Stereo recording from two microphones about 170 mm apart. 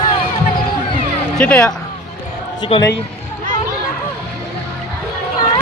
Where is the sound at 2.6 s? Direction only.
25° left (ahead or behind).